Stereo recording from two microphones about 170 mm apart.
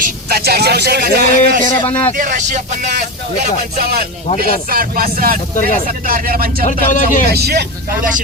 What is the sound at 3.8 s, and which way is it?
Speech, 60° right (ahead or behind).